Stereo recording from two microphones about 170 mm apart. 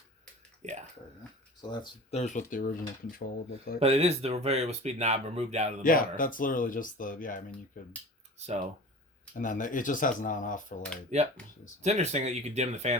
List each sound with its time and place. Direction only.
0.6 s speech: 40° right (ahead or behind)
1.7 s speech: 25° left (ahead or behind)
2.1 s speech: 45° left (ahead or behind)
3.8 s speech: 35° right (ahead or behind)
5.8 s speech: 55° left (ahead or behind)
9.4 s speech: 50° left (ahead or behind)
11.1 s speech: 40° right (ahead or behind)